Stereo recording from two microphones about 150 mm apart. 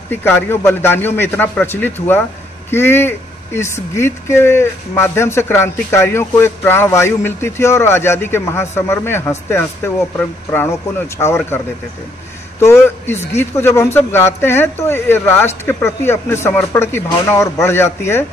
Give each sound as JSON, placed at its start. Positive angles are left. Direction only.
{"t": 0.1, "sound": "speech", "side_deg": 15}